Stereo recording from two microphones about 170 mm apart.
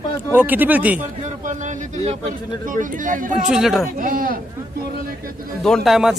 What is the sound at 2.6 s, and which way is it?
Speech, 50° right (ahead or behind).